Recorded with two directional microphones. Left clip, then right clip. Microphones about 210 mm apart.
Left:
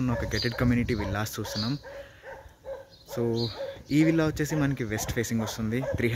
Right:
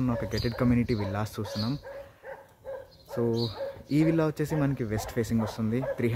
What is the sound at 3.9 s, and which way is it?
Speech, 10° right (ahead or behind).